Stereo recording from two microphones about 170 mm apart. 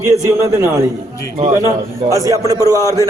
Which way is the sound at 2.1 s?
20° right (ahead or behind).